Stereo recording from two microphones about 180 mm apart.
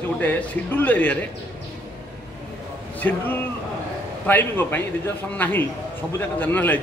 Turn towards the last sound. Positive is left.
turn(degrees=10)  # may be behind; listen again after turning